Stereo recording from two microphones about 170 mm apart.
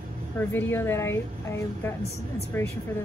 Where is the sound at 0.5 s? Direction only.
15° left (ahead or behind).